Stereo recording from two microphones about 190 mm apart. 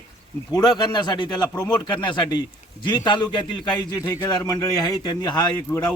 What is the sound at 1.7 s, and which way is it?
Speech, 5° left (ahead or behind).